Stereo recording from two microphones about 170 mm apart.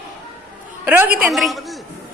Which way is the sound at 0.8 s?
10° right (ahead or behind).